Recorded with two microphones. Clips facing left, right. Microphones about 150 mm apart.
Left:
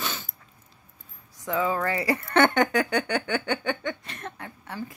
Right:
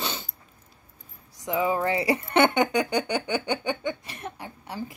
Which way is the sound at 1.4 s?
20° right (ahead or behind).